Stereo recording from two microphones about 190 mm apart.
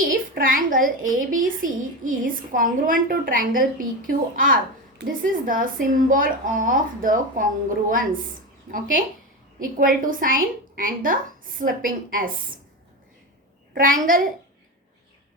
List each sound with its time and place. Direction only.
0.0 s a woman's voice: 45° right (ahead or behind)
9.6 s a woman's voice: 45° right (ahead or behind)
13.7 s a woman's voice: 45° right (ahead or behind)